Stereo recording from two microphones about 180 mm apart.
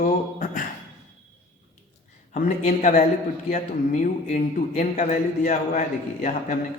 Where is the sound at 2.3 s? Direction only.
45° left (ahead or behind).